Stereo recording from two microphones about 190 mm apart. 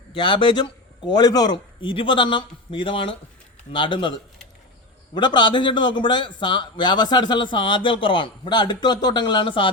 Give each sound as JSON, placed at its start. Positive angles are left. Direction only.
{"t": 0.2, "sound": "a man's voice", "side_deg": 25}